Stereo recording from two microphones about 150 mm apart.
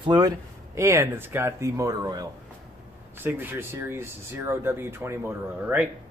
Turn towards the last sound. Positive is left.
turn(degrees=-10)  # may be behind; listen again after turning